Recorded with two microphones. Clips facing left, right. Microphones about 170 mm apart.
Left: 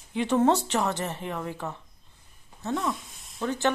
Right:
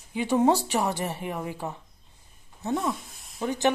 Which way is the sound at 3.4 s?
15° right (ahead or behind).